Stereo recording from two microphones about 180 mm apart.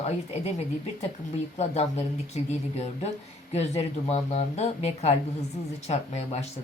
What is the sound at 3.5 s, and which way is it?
Speech, 35° left (ahead or behind).